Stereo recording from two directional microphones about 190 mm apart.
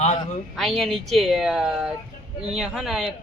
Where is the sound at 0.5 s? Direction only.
Centre (ahead or behind).